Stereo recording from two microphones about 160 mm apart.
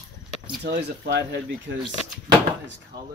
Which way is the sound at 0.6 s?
90° right.